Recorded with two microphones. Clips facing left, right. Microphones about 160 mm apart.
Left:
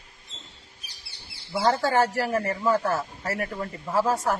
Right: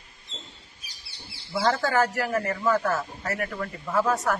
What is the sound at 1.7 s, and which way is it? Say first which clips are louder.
Speech: left 2 dB; 30° left (ahead or behind).